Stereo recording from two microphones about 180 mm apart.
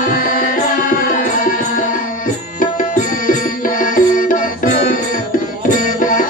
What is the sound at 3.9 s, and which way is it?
Music, 50° left (ahead or behind).